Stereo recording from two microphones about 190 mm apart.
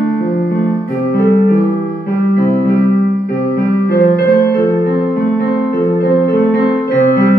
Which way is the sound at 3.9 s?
55° left (ahead or behind).